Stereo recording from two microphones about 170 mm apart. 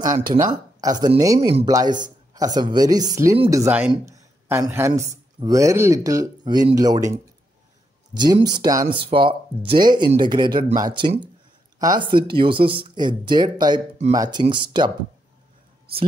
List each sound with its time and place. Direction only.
0.2 s speech: 25° right (ahead or behind)